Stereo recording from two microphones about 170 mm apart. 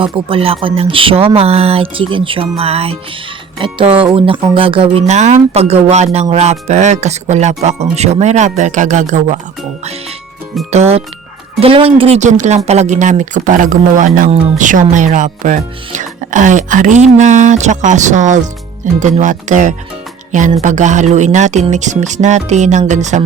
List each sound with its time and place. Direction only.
0.0 s speech: 35° right (ahead or behind)
10.7 s speech: 40° right (ahead or behind)